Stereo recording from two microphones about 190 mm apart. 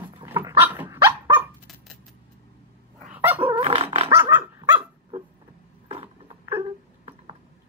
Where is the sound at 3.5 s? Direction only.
30° right (ahead or behind).